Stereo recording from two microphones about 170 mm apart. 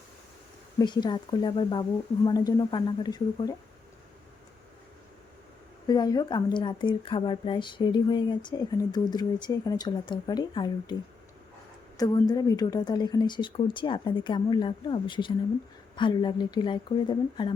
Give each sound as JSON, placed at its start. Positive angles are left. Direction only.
{"t": 0.8, "sound": "speech", "side_deg": 25}
{"t": 5.9, "sound": "speech", "side_deg": 25}
{"t": 11.9, "sound": "speech", "side_deg": 20}